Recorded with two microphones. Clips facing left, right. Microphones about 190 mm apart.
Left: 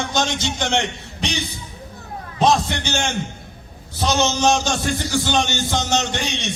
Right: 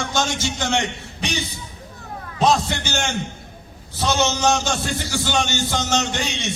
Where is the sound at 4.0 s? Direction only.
15° left (ahead or behind).